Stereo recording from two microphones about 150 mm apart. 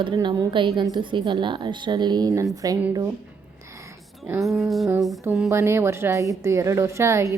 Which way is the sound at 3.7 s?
15° right (ahead or behind).